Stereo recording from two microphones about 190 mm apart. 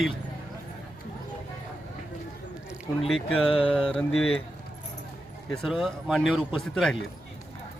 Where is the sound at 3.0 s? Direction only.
Centre (ahead or behind).